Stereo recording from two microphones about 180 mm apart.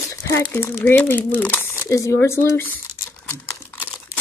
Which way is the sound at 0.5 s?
10° left (ahead or behind).